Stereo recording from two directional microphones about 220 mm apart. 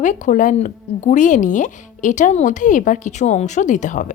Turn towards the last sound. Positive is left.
turn(degrees=35)  # may be behind; listen again after turning